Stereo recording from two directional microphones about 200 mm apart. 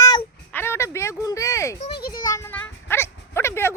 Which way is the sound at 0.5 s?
10° left (ahead or behind).